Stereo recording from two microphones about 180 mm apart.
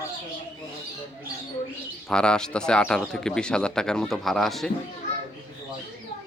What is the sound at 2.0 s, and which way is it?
A man's voice, 5° left (ahead or behind).